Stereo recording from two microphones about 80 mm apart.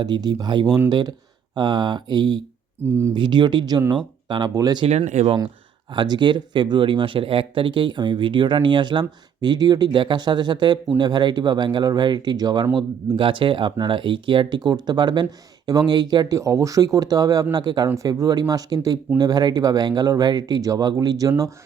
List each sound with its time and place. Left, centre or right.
0.0 s speech: right
2.8 s speech: right
3.2 s speech: right
4.5 s speech: right
5.9 s speech: right
12.7 s speech: right
16.4 s speech: right
17.5 s speech: right
17.9 s speech: right